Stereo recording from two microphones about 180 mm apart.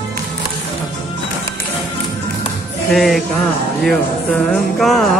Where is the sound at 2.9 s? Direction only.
Centre (ahead or behind).